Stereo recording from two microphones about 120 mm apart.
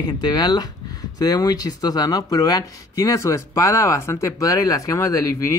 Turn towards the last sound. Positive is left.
turn(degrees=30)  # may be behind; listen again after turning